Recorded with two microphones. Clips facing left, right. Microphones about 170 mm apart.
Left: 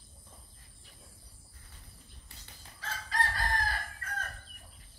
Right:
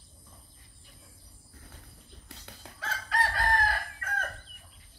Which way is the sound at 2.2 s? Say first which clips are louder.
Right 10 dB; 65° right (ahead or behind).